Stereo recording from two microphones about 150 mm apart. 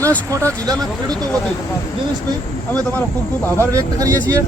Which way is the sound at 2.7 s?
10° left (ahead or behind).